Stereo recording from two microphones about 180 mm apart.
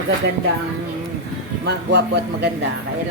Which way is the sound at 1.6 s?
70° right (ahead or behind).